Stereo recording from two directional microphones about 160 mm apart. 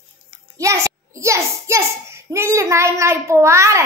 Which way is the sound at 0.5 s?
20° right (ahead or behind).